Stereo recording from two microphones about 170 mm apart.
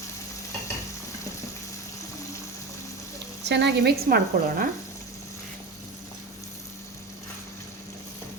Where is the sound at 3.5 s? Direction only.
80° right; by 4.7 s 55° right (ahead or behind).